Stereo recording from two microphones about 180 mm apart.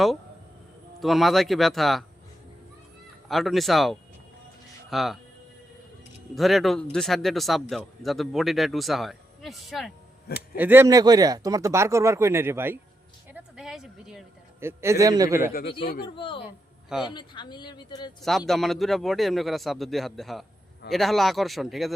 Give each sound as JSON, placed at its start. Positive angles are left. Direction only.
{"t": 0.9, "sound": "speech", "side_deg": 0}
{"t": 3.2, "sound": "speech", "side_deg": 0}
{"t": 6.3, "sound": "speech", "side_deg": 0}
{"t": 10.6, "sound": "speech", "side_deg": -10}
{"t": 13.3, "sound": "a sound", "side_deg": -5}
{"t": 14.6, "sound": "speech", "side_deg": -15}
{"t": 16.1, "sound": "speech", "side_deg": 30}
{"t": 18.2, "sound": "speech", "side_deg": 0}